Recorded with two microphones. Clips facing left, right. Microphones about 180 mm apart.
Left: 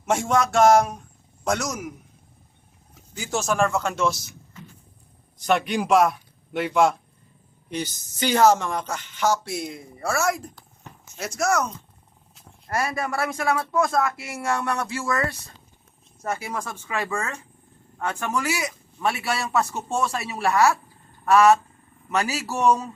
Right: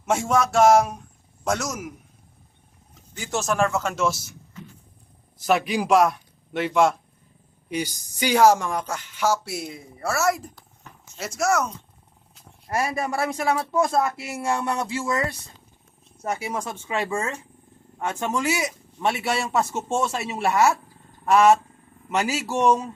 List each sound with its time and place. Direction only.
0.0 s speech: centre (ahead or behind)
3.2 s speech: centre (ahead or behind)
5.4 s a man's voice: centre (ahead or behind)
7.7 s speech: 10° right (ahead or behind)
12.6 s speech: 25° right (ahead or behind)